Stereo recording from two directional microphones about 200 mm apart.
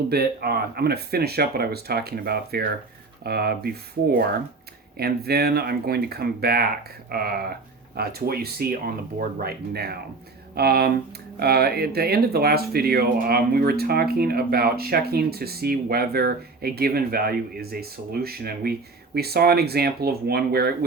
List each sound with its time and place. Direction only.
0.1 s speech: 50° right (ahead or behind)